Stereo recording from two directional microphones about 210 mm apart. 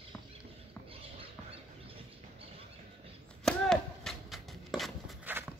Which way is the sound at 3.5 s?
Centre (ahead or behind).